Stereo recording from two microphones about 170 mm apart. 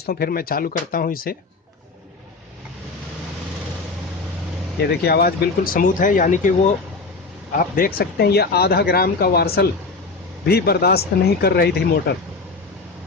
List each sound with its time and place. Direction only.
0.0 s speech: 60° left (ahead or behind)
4.8 s speech: 70° left (ahead or behind); by 6.5 s 50° left (ahead or behind)
7.8 s speech: 65° left (ahead or behind)